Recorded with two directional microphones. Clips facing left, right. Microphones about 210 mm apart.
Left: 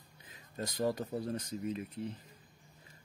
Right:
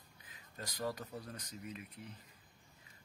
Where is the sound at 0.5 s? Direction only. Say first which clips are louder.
Left 7 dB; 25° left (ahead or behind).